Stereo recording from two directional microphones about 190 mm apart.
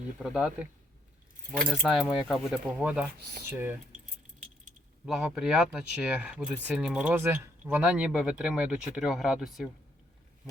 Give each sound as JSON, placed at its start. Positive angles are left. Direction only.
{"t": 0.2, "sound": "speech", "side_deg": -5}
{"t": 3.2, "sound": "speech", "side_deg": -55}
{"t": 5.0, "sound": "speech", "side_deg": -5}